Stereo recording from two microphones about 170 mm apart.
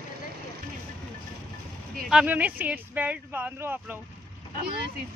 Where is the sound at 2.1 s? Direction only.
5° right (ahead or behind).